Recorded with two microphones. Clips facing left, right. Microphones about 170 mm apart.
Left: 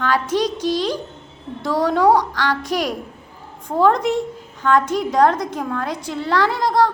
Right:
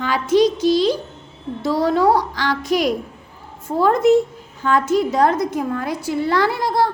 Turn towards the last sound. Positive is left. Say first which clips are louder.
# left 1 dB
turn(degrees=-10)  # may be behind; listen again after turning